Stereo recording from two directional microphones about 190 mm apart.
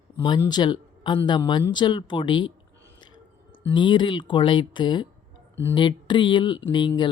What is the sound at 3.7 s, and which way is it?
Speech, 25° left (ahead or behind).